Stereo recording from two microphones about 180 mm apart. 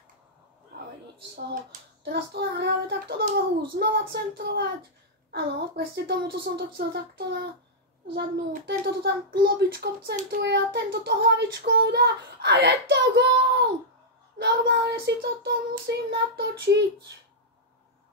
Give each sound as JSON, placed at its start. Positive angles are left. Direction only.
{"t": 2.0, "sound": "a child's voice", "side_deg": -65}